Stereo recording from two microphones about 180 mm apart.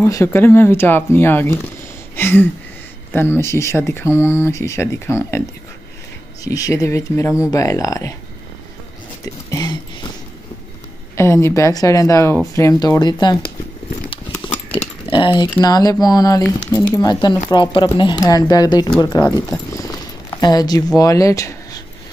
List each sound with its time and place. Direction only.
0.0 s speech: 15° left (ahead or behind)
2.1 s a sound: 10° left (ahead or behind)
3.1 s speech: 10° left (ahead or behind)
6.4 s speech: 20° left (ahead or behind)
9.2 s a sound: 20° left (ahead or behind)
11.1 s speech: 15° left (ahead or behind)
14.7 s speech: 30° left (ahead or behind)